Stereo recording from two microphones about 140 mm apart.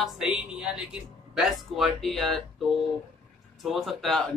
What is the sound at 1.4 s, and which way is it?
Speech, centre (ahead or behind).